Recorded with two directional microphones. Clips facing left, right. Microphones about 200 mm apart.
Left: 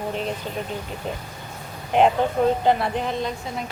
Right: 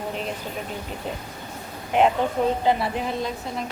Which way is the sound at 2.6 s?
5° right (ahead or behind).